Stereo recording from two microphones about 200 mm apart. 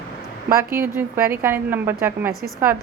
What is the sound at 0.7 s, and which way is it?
A woman's voice, 10° right (ahead or behind).